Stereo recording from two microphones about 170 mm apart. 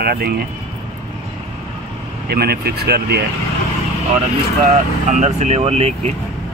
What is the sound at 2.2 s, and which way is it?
Speech, 65° right (ahead or behind).